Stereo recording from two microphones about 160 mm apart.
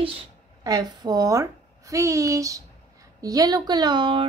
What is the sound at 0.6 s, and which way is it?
A woman's voice, 25° right (ahead or behind).